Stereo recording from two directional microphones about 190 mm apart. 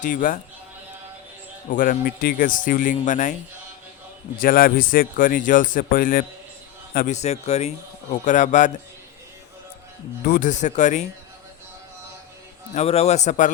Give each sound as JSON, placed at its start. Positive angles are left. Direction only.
{"t": 0.0, "sound": "a man's voice", "side_deg": 40}
{"t": 1.7, "sound": "speech", "side_deg": 45}
{"t": 4.4, "sound": "a man's voice", "side_deg": 50}
{"t": 10.2, "sound": "a man's voice", "side_deg": 45}
{"t": 12.7, "sound": "a man's voice", "side_deg": 30}